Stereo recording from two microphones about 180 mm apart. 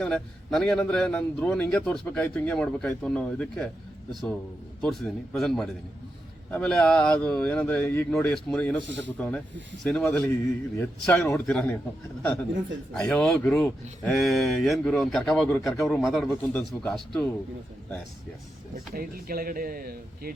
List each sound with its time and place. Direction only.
0.0 s speech: 5° left (ahead or behind)
18.9 s speech: 55° right (ahead or behind)